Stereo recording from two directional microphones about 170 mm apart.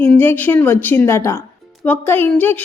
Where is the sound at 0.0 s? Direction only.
10° left (ahead or behind).